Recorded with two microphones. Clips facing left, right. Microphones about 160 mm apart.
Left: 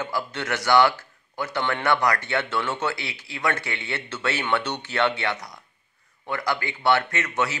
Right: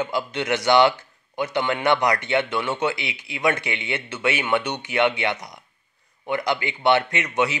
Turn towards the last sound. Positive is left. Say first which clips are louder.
# right 3 dB
turn(degrees=-15)  # may be behind; listen again after turning